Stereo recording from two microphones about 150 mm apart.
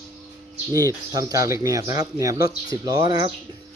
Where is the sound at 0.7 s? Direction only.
20° right (ahead or behind).